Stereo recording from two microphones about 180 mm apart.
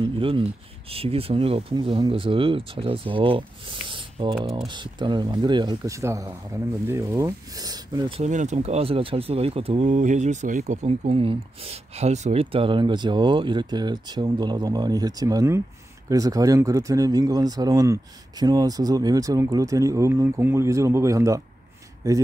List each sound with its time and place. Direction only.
0.2 s speech: 30° right (ahead or behind)
8.2 s speech: 40° right (ahead or behind); by 22.2 s 15° right (ahead or behind)